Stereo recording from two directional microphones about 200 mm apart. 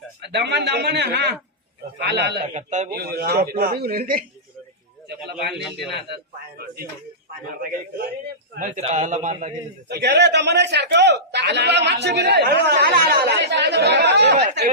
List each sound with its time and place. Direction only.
0.2 s a man's voice: 55° right (ahead or behind)
2.5 s a man's voice: 35° right (ahead or behind)
3.0 s a man's voice: 50° right (ahead or behind)
5.9 s a man's voice: 55° right (ahead or behind)
8.5 s a man's voice: 40° right (ahead or behind)
9.9 s a man's voice: 55° right (ahead or behind)